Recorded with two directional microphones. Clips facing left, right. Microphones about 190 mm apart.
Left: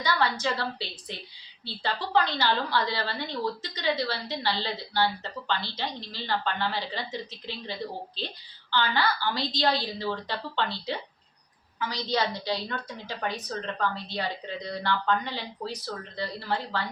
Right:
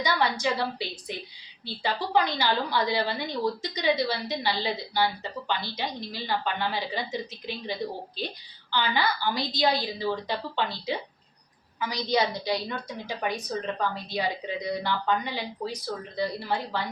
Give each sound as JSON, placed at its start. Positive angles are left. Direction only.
{"t": 0.0, "sound": "a woman's voice", "side_deg": -15}